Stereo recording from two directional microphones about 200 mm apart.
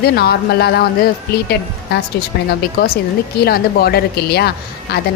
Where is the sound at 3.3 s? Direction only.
50° left (ahead or behind).